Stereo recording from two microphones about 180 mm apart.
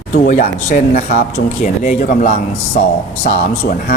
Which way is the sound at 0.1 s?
45° left (ahead or behind).